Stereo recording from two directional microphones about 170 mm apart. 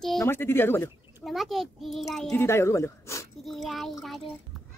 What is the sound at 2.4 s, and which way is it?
Speech, 15° left (ahead or behind).